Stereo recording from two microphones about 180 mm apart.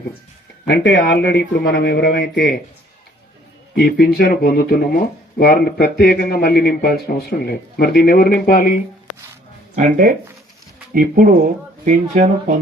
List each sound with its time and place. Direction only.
0.7 s speech: 65° left (ahead or behind)
3.8 s speech: 55° left (ahead or behind)
9.7 s speech: 50° right (ahead or behind)
11.9 s speech: 40° right (ahead or behind)